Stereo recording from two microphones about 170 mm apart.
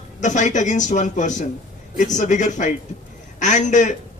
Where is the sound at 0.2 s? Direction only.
45° left (ahead or behind).